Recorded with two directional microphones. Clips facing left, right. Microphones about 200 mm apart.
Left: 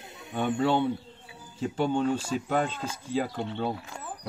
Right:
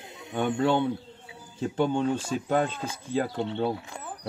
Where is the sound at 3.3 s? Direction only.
30° right (ahead or behind).